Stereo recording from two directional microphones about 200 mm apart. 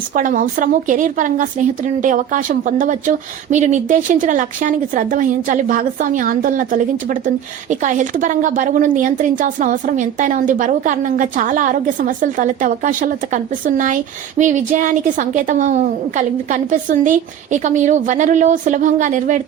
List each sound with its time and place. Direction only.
0.1 s a woman's voice: 40° right (ahead or behind)